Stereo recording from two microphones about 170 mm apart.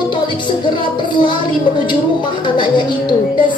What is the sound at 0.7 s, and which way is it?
Speech, 30° left (ahead or behind).